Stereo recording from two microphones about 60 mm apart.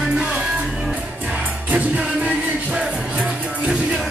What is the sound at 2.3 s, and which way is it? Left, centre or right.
Music, centre.